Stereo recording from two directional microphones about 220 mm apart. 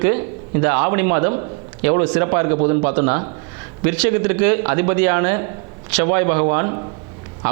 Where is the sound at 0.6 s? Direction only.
20° right (ahead or behind).